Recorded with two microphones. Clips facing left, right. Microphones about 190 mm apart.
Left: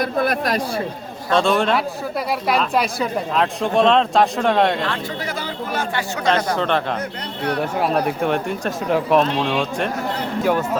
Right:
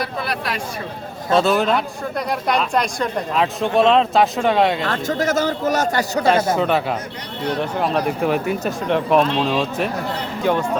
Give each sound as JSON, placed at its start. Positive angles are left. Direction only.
{"t": 0.0, "sound": "speech", "side_deg": 50}
{"t": 1.3, "sound": "speech", "side_deg": -5}
{"t": 4.9, "sound": "speech", "side_deg": -45}
{"t": 6.6, "sound": "a man's voice", "side_deg": -5}